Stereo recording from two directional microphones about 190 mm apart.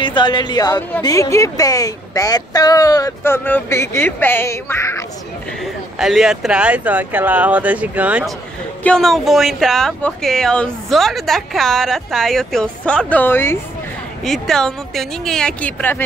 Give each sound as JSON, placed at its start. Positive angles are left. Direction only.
{"t": 0.0, "sound": "a woman's voice", "side_deg": 25}
{"t": 5.9, "sound": "speech", "side_deg": 0}